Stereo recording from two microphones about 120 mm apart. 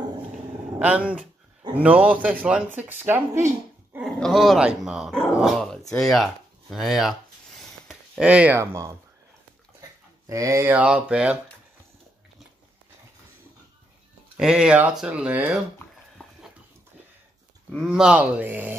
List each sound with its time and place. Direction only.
0.7 s speech: 10° right (ahead or behind)
4.0 s speech: centre (ahead or behind)
5.4 s dog: centre (ahead or behind)
8.5 s speech: 25° right (ahead or behind)
9.8 s a sound: 30° right (ahead or behind)
10.7 s speech: 10° right (ahead or behind)
14.3 s speech: 5° right (ahead or behind)
17.6 s speech: 5° left (ahead or behind)
18.0 s speech: 10° right (ahead or behind)